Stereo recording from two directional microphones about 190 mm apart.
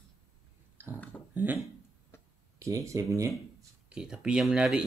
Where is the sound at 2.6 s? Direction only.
15° right (ahead or behind).